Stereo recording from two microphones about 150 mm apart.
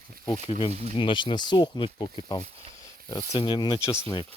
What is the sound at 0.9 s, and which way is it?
Speech, 35° left (ahead or behind).